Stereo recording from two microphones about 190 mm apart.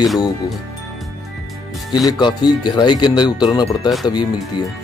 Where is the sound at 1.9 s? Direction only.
20° left (ahead or behind).